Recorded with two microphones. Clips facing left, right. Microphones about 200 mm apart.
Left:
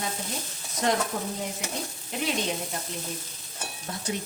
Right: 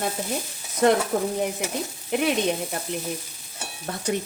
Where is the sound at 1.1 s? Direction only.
55° right (ahead or behind).